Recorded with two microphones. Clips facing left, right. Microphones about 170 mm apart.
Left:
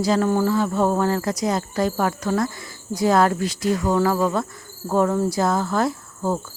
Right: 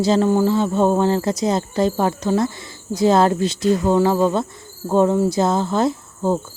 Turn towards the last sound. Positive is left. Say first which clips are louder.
# right 4 dB
turn(degrees=-20)  # may be behind; listen again after turning